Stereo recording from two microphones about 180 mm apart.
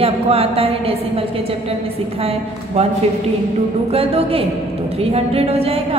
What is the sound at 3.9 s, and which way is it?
A woman's voice, 30° right (ahead or behind).